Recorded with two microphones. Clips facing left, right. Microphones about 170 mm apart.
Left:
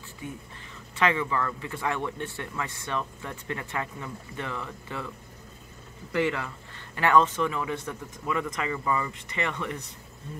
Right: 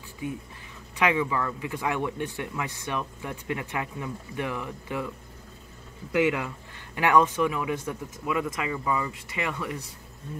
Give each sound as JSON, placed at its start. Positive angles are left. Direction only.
{"t": 0.9, "sound": "speech", "side_deg": -15}
{"t": 6.1, "sound": "speech", "side_deg": -15}